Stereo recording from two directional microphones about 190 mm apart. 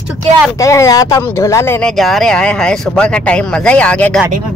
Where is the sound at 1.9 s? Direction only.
Centre (ahead or behind).